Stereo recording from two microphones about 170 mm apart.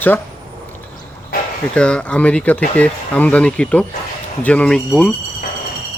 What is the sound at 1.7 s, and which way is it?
Speech, 5° left (ahead or behind).